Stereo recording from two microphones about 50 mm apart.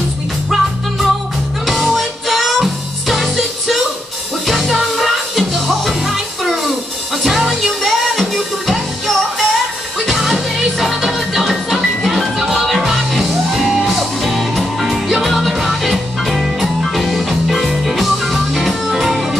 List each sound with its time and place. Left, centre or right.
0.5 s music: centre